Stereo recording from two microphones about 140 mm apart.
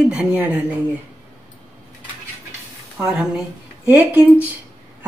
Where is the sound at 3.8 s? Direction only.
10° right (ahead or behind).